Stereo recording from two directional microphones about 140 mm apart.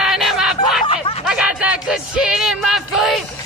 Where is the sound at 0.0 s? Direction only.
Centre (ahead or behind).